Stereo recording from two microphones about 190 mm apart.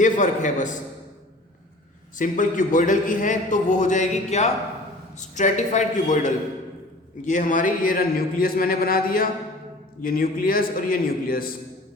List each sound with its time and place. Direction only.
0.0 s a man's voice: 40° left (ahead or behind)
2.1 s a man's voice: 45° left (ahead or behind)